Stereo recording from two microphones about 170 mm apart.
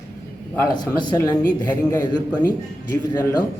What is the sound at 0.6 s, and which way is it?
Speech, 25° left (ahead or behind).